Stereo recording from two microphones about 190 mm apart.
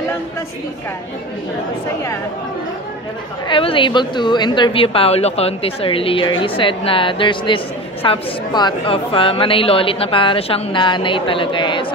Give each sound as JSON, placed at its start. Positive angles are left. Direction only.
{"t": 3.4, "sound": "a woman's voice", "side_deg": 25}